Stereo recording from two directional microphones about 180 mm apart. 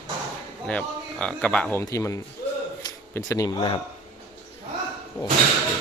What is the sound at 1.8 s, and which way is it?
A man's voice, 15° left (ahead or behind).